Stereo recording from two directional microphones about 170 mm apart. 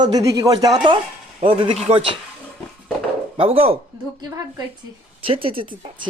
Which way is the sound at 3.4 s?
35° right (ahead or behind).